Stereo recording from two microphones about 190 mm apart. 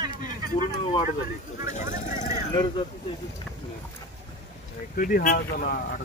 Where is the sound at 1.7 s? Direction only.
40° left (ahead or behind).